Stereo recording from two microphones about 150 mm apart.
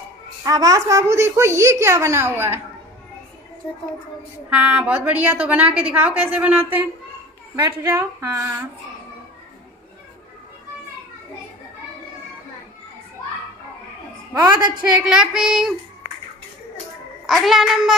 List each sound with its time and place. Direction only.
0.4 s a woman's voice: 25° right (ahead or behind)
4.5 s a woman's voice: 10° right (ahead or behind)
14.8 s child singing: 5° right (ahead or behind)
17.3 s child singing: centre (ahead or behind)